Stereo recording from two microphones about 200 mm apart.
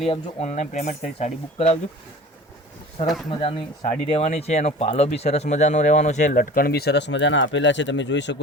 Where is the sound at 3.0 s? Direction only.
35° left (ahead or behind).